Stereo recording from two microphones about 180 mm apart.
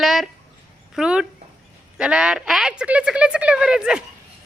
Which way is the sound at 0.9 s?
5° right (ahead or behind).